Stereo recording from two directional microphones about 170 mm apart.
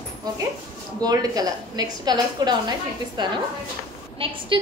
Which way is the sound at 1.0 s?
20° right (ahead or behind).